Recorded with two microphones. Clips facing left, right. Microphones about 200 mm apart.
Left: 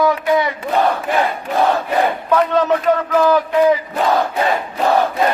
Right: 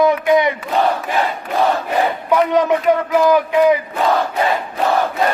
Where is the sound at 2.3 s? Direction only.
15° right (ahead or behind).